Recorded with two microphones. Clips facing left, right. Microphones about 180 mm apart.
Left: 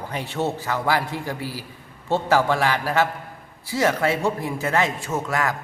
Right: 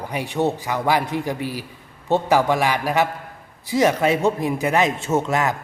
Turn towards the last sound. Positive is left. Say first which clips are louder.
# right 4 dB
turn(degrees=-20)  # may be behind; listen again after turning